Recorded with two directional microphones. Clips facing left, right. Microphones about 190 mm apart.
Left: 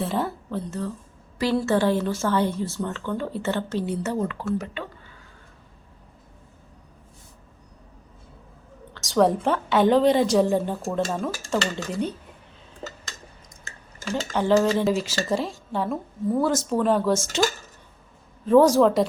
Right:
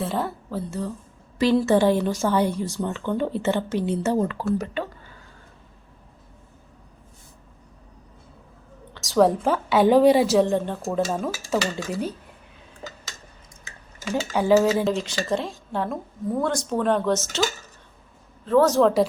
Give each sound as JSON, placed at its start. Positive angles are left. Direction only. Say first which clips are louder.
{"t": 0.0, "sound": "speech", "louder": "even", "side_deg": 0}
{"t": 1.4, "sound": "a woman's voice", "louder": "right 3 dB", "side_deg": -20}
{"t": 4.0, "sound": "speech", "louder": "right 4 dB", "side_deg": -35}
{"t": 9.0, "sound": "a woman's voice", "louder": "right 1 dB", "side_deg": 0}
{"t": 10.4, "sound": "a woman's voice", "louder": "left 1 dB", "side_deg": 5}
{"t": 10.8, "sound": "a woman's voice", "louder": "right 1 dB", "side_deg": -5}
{"t": 14.0, "sound": "a woman's voice", "louder": "right 1 dB", "side_deg": -5}
{"t": 14.9, "sound": "a woman's voice", "louder": "left 1 dB", "side_deg": 5}
{"t": 18.4, "sound": "speech", "louder": "left 3 dB", "side_deg": 15}
{"t": 18.8, "sound": "a woman's voice", "louder": "even", "side_deg": 0}